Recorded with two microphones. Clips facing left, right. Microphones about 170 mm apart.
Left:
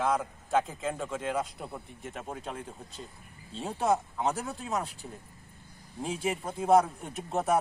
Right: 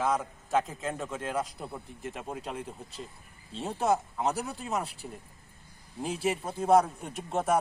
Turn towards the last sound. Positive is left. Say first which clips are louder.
# even
turn(degrees=0)  # may be behind; listen again after turning